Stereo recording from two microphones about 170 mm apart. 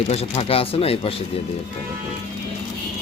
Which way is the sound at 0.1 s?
35° left (ahead or behind).